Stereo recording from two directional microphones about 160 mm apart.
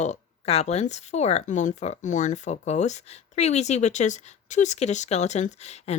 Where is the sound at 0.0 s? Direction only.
45° left (ahead or behind).